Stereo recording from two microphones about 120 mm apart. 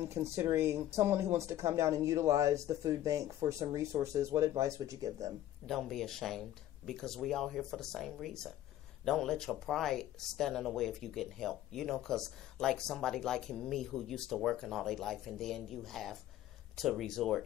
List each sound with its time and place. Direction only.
0.0 s speech: 20° right (ahead or behind)
5.7 s speech: centre (ahead or behind)